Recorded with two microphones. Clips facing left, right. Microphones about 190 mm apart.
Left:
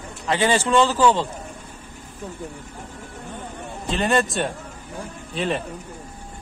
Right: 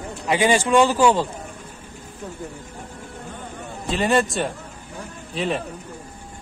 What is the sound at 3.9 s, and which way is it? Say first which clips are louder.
A man's voice: right 1 dB; centre (ahead or behind).